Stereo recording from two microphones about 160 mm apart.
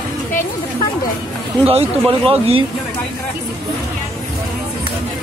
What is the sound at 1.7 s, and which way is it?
Speech, 35° right (ahead or behind).